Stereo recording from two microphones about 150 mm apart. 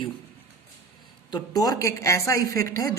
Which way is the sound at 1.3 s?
25° left (ahead or behind).